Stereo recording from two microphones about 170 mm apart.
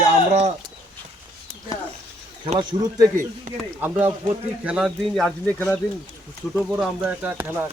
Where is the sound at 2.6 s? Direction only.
25° right (ahead or behind).